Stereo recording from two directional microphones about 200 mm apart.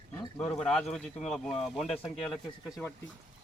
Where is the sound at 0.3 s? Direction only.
5° left (ahead or behind).